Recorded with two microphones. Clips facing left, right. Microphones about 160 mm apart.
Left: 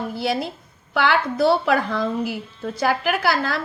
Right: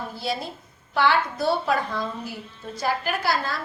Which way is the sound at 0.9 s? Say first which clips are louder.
Left 2 dB; 75° left (ahead or behind).